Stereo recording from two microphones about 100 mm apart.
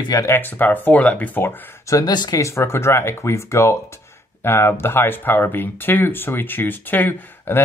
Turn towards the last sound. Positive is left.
turn(degrees=20)  # may be behind; listen again after turning